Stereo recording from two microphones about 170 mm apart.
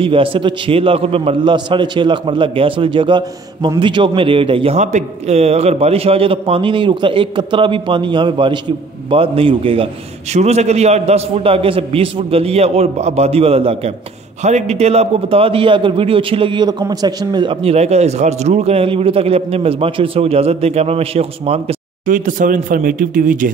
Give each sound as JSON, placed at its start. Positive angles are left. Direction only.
{"t": 0.0, "sound": "a man's voice", "side_deg": -30}
{"t": 22.0, "sound": "speech", "side_deg": -50}